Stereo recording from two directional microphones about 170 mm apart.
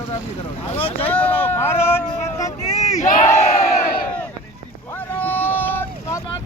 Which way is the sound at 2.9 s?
45° left (ahead or behind).